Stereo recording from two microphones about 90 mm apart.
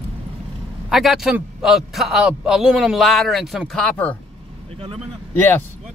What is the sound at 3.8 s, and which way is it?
Speech, 15° left (ahead or behind).